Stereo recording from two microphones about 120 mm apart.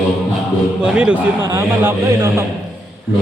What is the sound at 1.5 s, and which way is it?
Speech, 20° right (ahead or behind).